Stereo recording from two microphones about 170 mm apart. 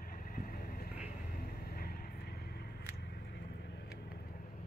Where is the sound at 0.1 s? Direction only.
60° left (ahead or behind).